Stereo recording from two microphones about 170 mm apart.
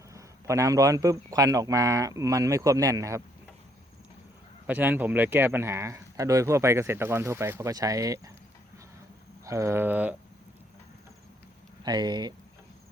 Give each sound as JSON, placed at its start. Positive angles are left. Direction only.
{"t": 0.1, "sound": "speech", "side_deg": -20}
{"t": 4.6, "sound": "speech", "side_deg": -10}
{"t": 9.4, "sound": "speech", "side_deg": -20}
{"t": 11.8, "sound": "speech", "side_deg": -25}